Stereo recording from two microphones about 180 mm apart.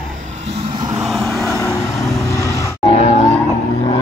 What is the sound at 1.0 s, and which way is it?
Vehicle, centre (ahead or behind).